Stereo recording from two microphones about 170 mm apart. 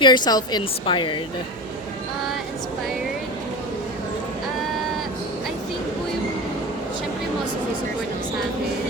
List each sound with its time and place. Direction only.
0.0 s a woman's voice: 25° left (ahead or behind)